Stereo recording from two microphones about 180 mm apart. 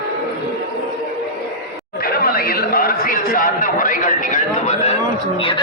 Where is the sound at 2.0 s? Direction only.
55° left (ahead or behind); by 4.9 s 40° left (ahead or behind).